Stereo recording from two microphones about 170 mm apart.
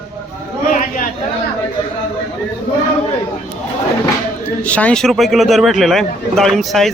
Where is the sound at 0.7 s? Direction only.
50° left (ahead or behind).